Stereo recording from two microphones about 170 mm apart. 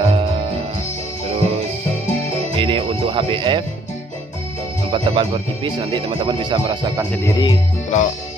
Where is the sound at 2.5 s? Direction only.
30° right (ahead or behind).